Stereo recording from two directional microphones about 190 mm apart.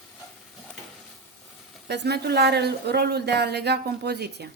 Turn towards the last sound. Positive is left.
turn(degrees=-60)  # may be behind; listen again after turning